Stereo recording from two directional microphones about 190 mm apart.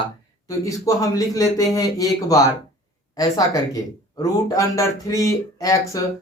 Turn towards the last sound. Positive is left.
turn(degrees=15)  # may be behind; listen again after turning